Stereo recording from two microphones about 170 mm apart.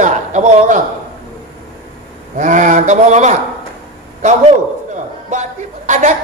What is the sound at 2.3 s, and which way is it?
Speech, 50° right (ahead or behind).